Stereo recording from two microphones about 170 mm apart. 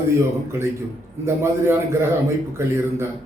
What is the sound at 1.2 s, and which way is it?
A man's voice, 15° right (ahead or behind).